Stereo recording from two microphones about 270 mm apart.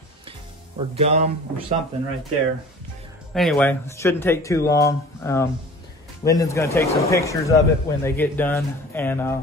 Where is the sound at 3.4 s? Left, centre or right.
Centre.